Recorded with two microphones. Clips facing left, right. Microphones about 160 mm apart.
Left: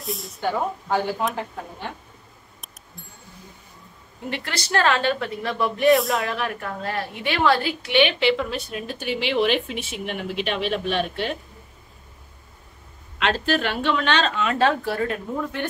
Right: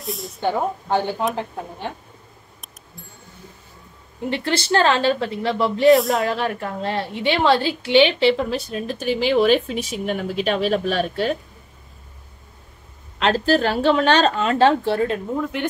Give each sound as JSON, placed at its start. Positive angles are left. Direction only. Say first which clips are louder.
{"t": 0.0, "sound": "speech", "louder": "right 2 dB", "side_deg": 0}
{"t": 0.4, "sound": "a woman's voice", "louder": "right 3 dB", "side_deg": -25}
{"t": 4.3, "sound": "a woman's voice", "louder": "right 6 dB", "side_deg": -30}
{"t": 5.9, "sound": "speech", "louder": "right 3 dB", "side_deg": 0}
{"t": 6.2, "sound": "a woman's voice", "louder": "right 4 dB", "side_deg": -25}
{"t": 13.2, "sound": "speech", "louder": "right 5 dB", "side_deg": -35}